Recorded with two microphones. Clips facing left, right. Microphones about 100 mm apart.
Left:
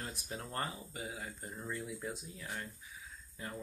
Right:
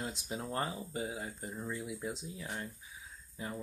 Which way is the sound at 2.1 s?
25° right (ahead or behind).